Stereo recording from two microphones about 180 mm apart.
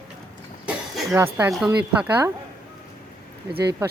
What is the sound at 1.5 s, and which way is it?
Speech, 5° right (ahead or behind).